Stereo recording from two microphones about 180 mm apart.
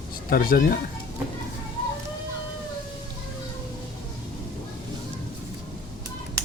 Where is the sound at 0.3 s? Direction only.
55° left (ahead or behind).